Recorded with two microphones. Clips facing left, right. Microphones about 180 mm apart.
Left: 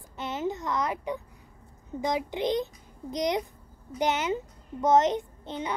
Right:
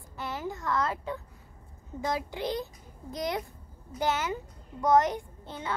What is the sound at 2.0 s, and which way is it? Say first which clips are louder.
A child's voice: left 3 dB; 20° left (ahead or behind).